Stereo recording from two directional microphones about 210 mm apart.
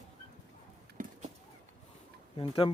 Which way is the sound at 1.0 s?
40° right (ahead or behind).